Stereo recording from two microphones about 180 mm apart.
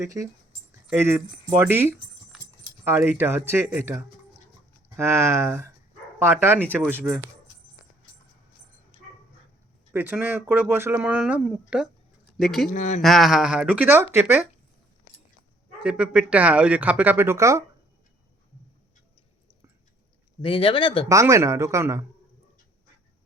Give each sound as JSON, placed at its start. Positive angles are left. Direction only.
{"t": 0.0, "sound": "speech", "side_deg": -20}
{"t": 2.3, "sound": "clip-clop", "side_deg": 0}
{"t": 2.8, "sound": "speech", "side_deg": -10}
{"t": 9.9, "sound": "speech", "side_deg": -10}
{"t": 12.6, "sound": "speech", "side_deg": 40}
{"t": 13.0, "sound": "speech", "side_deg": 0}
{"t": 15.8, "sound": "speech", "side_deg": -5}
{"t": 20.4, "sound": "speech", "side_deg": 30}
{"t": 21.1, "sound": "speech", "side_deg": -15}